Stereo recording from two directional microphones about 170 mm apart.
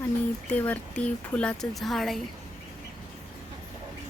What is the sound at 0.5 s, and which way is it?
Speech, 10° left (ahead or behind).